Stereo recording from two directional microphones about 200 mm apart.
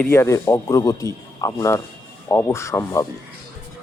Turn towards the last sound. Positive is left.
turn(degrees=15)  # may be behind; listen again after turning